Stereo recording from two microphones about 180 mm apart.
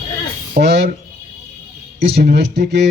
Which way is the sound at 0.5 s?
65° right (ahead or behind).